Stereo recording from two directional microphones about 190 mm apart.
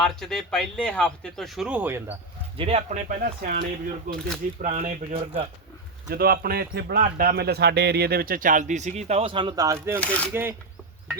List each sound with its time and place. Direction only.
0.0 s speech: centre (ahead or behind)
2.6 s speech: 30° right (ahead or behind)
6.1 s speech: 55° right (ahead or behind); by 10.0 s 15° right (ahead or behind)
10.0 s speech: 10° left (ahead or behind)